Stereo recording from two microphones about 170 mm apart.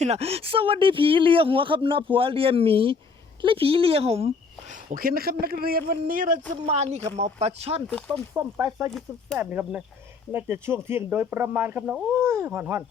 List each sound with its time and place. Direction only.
0.0 s speech: 40° right (ahead or behind)
4.7 s a man's voice: 50° right (ahead or behind)
6.5 s speech: 40° right (ahead or behind)
7.9 s speech: 5° left (ahead or behind)
8.4 s speech: 25° right (ahead or behind)
8.9 s speech: centre (ahead or behind)
9.4 s speech: 10° right (ahead or behind)